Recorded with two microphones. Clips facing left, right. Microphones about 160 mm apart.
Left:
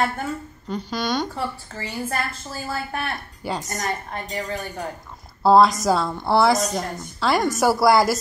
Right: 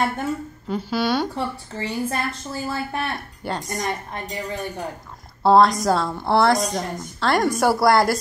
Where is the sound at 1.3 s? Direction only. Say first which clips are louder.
Right 2 dB; 20° right (ahead or behind).